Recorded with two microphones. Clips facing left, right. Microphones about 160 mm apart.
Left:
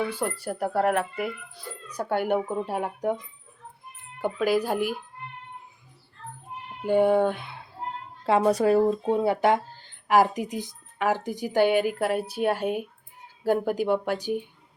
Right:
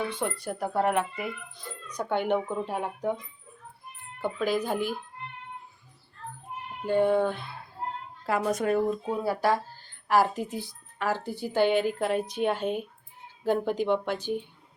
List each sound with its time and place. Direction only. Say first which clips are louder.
0.1 s speech: left 2 dB; 5° left (ahead or behind)
4.2 s speech: left 4 dB; 10° left (ahead or behind)
6.8 s speech: left 3 dB; 10° left (ahead or behind)
8.3 s speech: left 6 dB; 35° left (ahead or behind); by 14.4 s 10° left (ahead or behind)